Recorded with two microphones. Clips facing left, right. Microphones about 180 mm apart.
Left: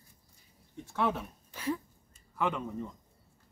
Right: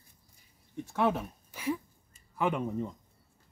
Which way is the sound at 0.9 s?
15° right (ahead or behind).